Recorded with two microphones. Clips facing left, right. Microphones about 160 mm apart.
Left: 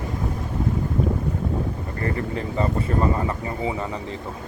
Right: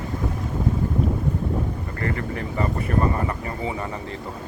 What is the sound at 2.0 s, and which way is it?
Speech, 20° left (ahead or behind).